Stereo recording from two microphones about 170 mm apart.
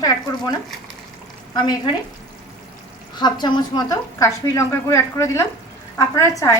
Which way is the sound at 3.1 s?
25° left (ahead or behind).